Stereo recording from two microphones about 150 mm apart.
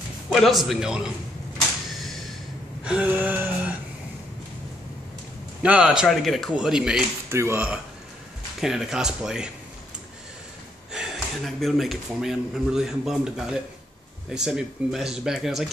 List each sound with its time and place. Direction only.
0.3 s speech: centre (ahead or behind)
2.8 s a sound: 5° right (ahead or behind)
5.6 s speech: 5° right (ahead or behind)
7.2 s speech: 15° right (ahead or behind)
8.5 s speech: 5° right (ahead or behind)
10.9 s speech: centre (ahead or behind)